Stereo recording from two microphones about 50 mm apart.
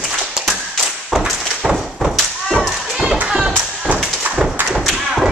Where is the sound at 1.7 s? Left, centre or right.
Centre.